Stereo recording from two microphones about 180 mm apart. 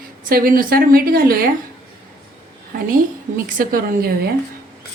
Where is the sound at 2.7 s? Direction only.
50° right (ahead or behind).